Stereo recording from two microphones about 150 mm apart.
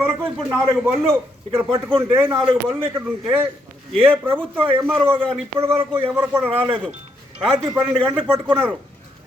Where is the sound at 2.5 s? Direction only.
30° right (ahead or behind).